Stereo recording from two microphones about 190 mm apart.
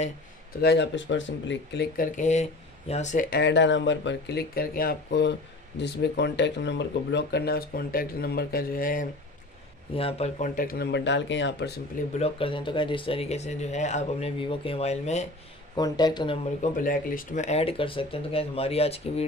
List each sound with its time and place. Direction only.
0.6 s speech: 60° left (ahead or behind)
2.1 s speech: 40° left (ahead or behind)
9.9 s speech: 30° left (ahead or behind); by 11.7 s 70° left (ahead or behind)
12.2 s speech: 30° left (ahead or behind)
15.7 s speech: 20° left (ahead or behind)
16.6 s speech: 45° left (ahead or behind)